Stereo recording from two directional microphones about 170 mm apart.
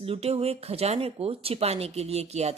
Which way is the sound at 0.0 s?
35° right (ahead or behind).